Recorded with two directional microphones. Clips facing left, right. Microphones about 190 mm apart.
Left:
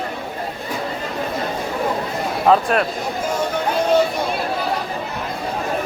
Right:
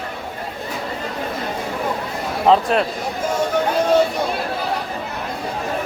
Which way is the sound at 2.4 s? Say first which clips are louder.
Right 1 dB; 25° right (ahead or behind).